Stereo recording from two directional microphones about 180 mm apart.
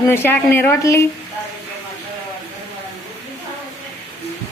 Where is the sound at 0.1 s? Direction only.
10° left (ahead or behind).